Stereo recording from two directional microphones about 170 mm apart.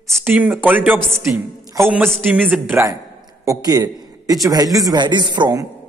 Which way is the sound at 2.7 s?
20° right (ahead or behind).